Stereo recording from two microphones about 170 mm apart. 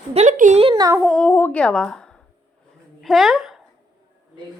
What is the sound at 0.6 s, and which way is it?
Speech, 20° right (ahead or behind).